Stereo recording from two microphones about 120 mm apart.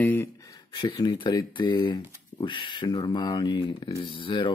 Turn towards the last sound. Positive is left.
turn(degrees=45)  # may be behind; listen again after turning